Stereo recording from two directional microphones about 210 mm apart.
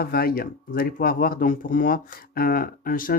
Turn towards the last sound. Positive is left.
turn(degrees=40)  # may be behind; listen again after turning